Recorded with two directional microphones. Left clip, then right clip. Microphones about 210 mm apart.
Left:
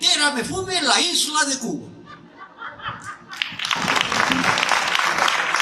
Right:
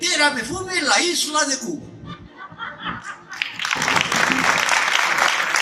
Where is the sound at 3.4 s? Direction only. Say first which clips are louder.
Even; 50° left (ahead or behind).